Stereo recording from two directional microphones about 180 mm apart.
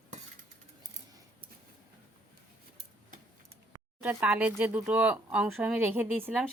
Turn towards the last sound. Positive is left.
turn(degrees=-10)  # may be behind; listen again after turning